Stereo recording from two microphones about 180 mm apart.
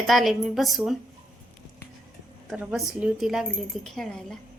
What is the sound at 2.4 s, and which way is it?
A woman's voice, 5° right (ahead or behind).